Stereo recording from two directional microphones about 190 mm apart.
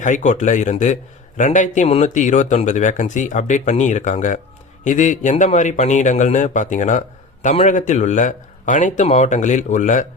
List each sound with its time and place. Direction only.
0.0 s speech: 40° left (ahead or behind)